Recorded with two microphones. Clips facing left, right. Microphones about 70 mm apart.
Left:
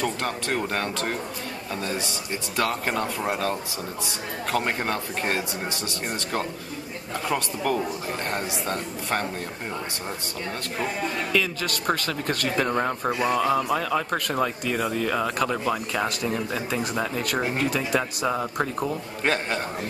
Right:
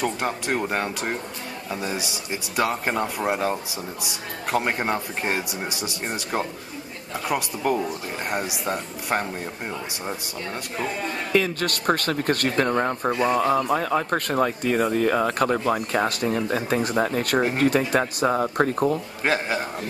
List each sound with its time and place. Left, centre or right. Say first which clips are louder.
0.0 s speech: right 2 dB; centre
11.3 s speech: right 6 dB; right
12.6 s speech: right 2 dB; centre
13.7 s speech: right 2 dB; right
16.1 s speech: right 3 dB; right
19.2 s speech: right 1 dB; centre